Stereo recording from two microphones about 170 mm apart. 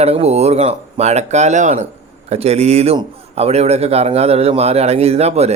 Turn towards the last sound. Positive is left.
turn(degrees=-40)  # may be behind; listen again after turning